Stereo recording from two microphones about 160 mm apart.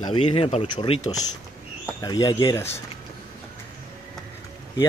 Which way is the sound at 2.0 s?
25° left (ahead or behind).